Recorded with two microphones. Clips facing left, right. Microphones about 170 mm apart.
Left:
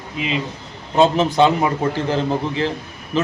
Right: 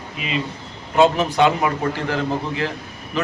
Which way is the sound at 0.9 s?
30° left (ahead or behind).